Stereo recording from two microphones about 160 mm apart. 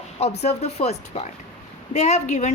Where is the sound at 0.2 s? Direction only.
40° left (ahead or behind).